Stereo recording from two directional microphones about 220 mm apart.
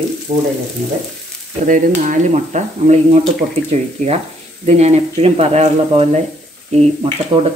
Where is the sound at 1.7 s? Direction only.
35° right (ahead or behind).